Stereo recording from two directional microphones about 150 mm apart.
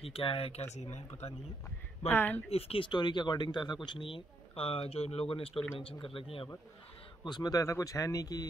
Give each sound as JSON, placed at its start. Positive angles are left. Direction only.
{"t": 0.0, "sound": "speech", "side_deg": 40}
{"t": 2.0, "sound": "speech", "side_deg": 15}
{"t": 2.5, "sound": "speech", "side_deg": 35}
{"t": 7.2, "sound": "speech", "side_deg": 25}